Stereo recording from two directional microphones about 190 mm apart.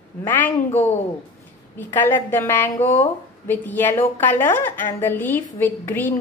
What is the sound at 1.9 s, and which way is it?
A woman's voice, 10° left (ahead or behind).